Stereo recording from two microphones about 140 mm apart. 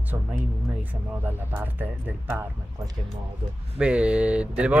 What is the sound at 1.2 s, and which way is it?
Speech, 15° right (ahead or behind).